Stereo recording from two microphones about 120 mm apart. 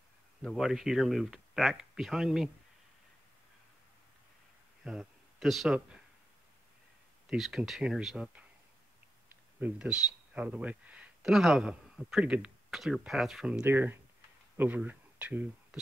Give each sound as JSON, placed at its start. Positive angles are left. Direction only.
{"t": 0.4, "sound": "speech", "side_deg": 0}
{"t": 4.8, "sound": "speech", "side_deg": 0}
{"t": 7.2, "sound": "speech", "side_deg": 0}
{"t": 9.3, "sound": "speech", "side_deg": -15}
{"t": 13.7, "sound": "speech", "side_deg": -15}